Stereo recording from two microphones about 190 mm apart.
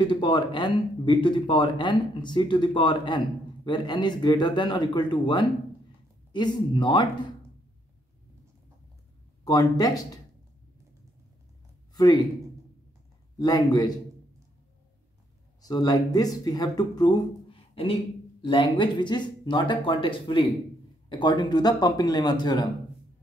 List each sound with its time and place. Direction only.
0.0 s speech: 25° left (ahead or behind)
9.4 s speech: 20° left (ahead or behind)
11.9 s speech: 20° left (ahead or behind)
13.4 s speech: 20° left (ahead or behind)
15.6 s speech: 20° left (ahead or behind)